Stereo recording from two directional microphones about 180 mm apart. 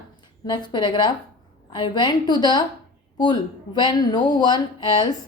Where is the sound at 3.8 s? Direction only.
25° left (ahead or behind).